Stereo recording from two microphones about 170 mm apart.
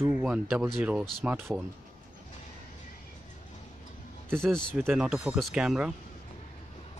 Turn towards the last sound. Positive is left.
turn(degrees=-5)  # may be behind; listen again after turning